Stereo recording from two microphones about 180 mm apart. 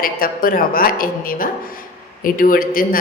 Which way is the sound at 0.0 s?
50° left (ahead or behind).